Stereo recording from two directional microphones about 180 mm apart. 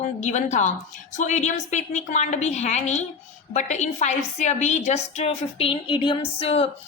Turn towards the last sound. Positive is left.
turn(degrees=35)  # may be behind; listen again after turning